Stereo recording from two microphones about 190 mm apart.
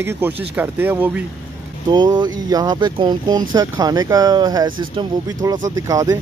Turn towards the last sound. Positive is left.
turn(degrees=-20)  # may be behind; listen again after turning